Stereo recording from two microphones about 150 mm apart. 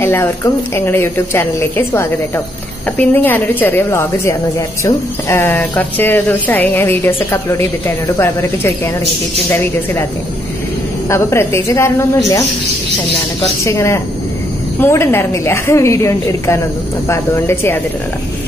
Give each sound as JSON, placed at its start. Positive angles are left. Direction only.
{"t": 0.0, "sound": "a woman's voice", "side_deg": 15}
{"t": 11.1, "sound": "a woman's voice", "side_deg": 20}
{"t": 13.7, "sound": "a woman's voice", "side_deg": 20}